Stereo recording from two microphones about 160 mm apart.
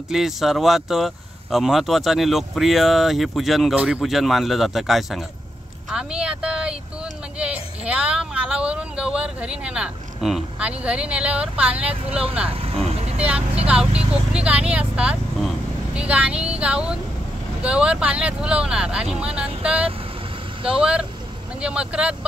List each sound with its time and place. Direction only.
0.1 s speech: centre (ahead or behind)
5.9 s vehicle: 5° right (ahead or behind)
7.3 s speech: 5° right (ahead or behind)
12.5 s vehicle: 40° right (ahead or behind)
13.7 s speech: 5° right (ahead or behind)